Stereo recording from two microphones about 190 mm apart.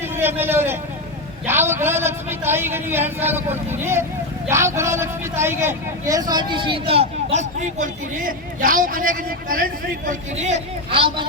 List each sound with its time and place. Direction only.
0.2 s a man's voice: 10° right (ahead or behind); by 11.3 s 30° right (ahead or behind)